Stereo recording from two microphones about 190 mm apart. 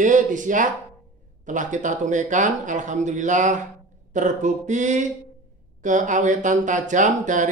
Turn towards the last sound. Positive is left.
turn(degrees=-40)  # may be behind; listen again after turning